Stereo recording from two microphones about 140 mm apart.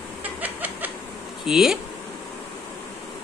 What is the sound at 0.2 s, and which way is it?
Chicken, 10° right (ahead or behind).